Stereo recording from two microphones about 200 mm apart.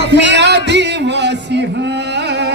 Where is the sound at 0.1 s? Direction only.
60° right (ahead or behind).